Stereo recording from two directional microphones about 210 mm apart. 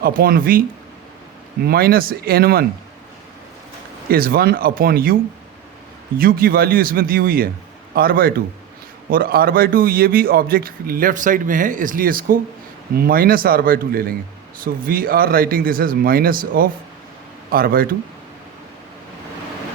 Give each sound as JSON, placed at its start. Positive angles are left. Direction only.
{"t": 0.0, "sound": "speech", "side_deg": -45}
{"t": 1.6, "sound": "speech", "side_deg": -45}
{"t": 4.1, "sound": "speech", "side_deg": -45}
{"t": 6.1, "sound": "speech", "side_deg": -45}